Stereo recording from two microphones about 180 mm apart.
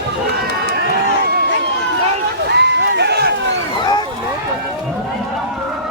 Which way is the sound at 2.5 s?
70° right (ahead or behind).